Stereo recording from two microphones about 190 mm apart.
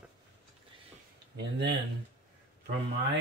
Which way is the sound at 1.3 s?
65° right (ahead or behind).